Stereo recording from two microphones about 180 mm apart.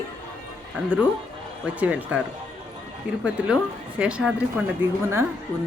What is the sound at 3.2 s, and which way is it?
A woman's voice, 5° right (ahead or behind).